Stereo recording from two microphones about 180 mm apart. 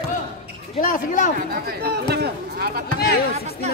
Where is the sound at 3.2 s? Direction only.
60° left (ahead or behind).